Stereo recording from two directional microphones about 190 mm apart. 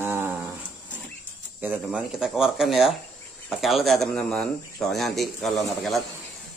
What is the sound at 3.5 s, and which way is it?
A man's voice, centre (ahead or behind).